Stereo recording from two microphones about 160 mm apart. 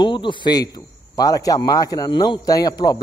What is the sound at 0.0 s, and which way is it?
A man's voice, 30° left (ahead or behind).